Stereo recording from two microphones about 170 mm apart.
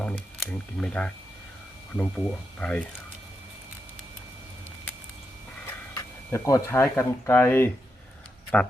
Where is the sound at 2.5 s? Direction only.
5° left (ahead or behind).